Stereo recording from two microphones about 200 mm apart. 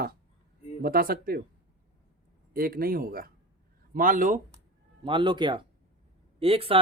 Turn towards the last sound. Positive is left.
turn(degrees=-30)  # may be behind; listen again after turning